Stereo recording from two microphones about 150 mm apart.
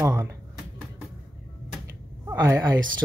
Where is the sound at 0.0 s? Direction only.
20° right (ahead or behind).